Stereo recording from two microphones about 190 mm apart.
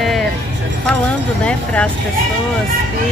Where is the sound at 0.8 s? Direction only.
5° left (ahead or behind).